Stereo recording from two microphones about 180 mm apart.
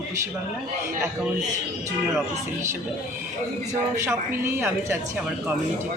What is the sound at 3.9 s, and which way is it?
Speech, 15° right (ahead or behind).